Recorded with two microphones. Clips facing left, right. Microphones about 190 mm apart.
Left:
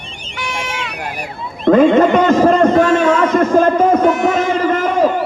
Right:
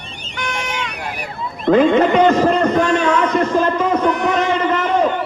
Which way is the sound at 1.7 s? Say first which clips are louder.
Left 3 dB; 45° left (ahead or behind).